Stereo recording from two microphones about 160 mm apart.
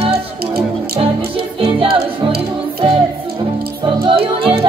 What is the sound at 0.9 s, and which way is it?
Music, 35° right (ahead or behind).